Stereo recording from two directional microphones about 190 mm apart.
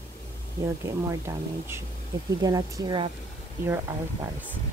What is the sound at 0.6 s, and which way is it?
Speech, 15° right (ahead or behind).